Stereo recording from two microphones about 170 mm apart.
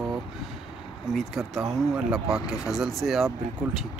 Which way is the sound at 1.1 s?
Centre (ahead or behind).